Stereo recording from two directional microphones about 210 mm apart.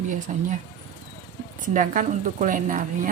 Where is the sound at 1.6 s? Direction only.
40° right (ahead or behind).